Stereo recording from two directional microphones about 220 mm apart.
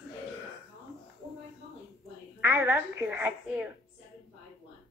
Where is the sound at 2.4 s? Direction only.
10° right (ahead or behind).